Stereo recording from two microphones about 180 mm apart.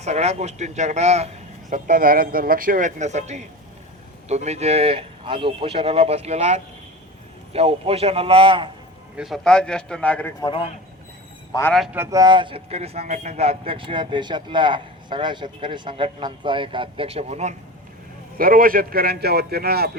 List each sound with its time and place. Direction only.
0.0 s speech: 35° right (ahead or behind)
1.7 s speech: 50° right (ahead or behind); by 8.7 s 30° right (ahead or behind)
9.1 s a man's voice: centre (ahead or behind)
10.4 s a man's voice: 30° left (ahead or behind)
11.7 s a man's voice: centre (ahead or behind)
11.9 s speech: 20° right (ahead or behind); by 17.5 s 35° right (ahead or behind)
18.3 s a man's voice: 55° right (ahead or behind)